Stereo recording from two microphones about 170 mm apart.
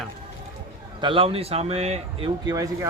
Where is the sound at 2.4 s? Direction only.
20° right (ahead or behind).